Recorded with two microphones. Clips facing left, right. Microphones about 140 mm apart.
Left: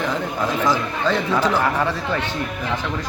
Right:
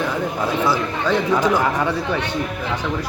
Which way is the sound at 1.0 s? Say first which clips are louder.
Right 2 dB; 15° right (ahead or behind).